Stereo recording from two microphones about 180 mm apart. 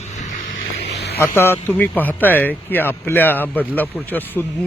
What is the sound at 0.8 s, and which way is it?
Vehicle, 70° left (ahead or behind).